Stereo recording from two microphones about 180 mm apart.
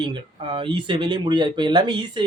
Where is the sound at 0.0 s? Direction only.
25° right (ahead or behind).